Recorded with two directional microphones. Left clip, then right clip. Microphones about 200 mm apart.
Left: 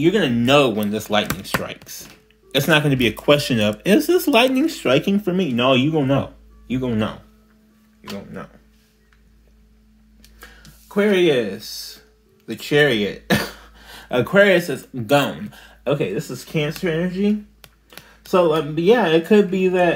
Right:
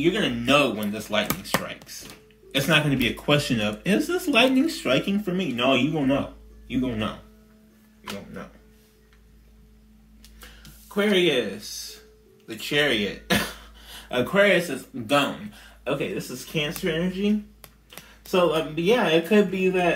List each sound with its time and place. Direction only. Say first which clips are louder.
0.0 s speech: left 6 dB; 50° left (ahead or behind)
11.0 s speech: left 5 dB; 40° left (ahead or behind)
18.0 s a sound: left 3 dB; 5° left (ahead or behind)
18.3 s speech: left 5 dB; 40° left (ahead or behind)